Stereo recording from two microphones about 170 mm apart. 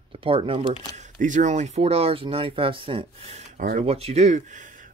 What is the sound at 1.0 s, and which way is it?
Speech, 50° right (ahead or behind).